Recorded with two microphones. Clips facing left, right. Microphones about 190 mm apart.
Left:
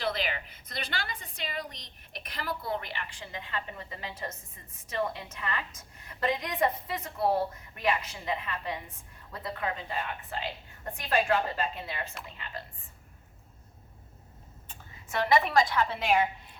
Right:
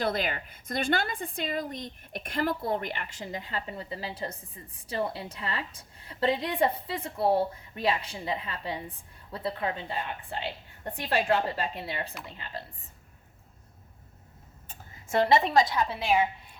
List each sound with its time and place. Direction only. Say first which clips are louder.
0.0 s a woman's voice: right 3 dB; 45° right (ahead or behind)
15.1 s a woman's voice: right 3 dB; 25° right (ahead or behind)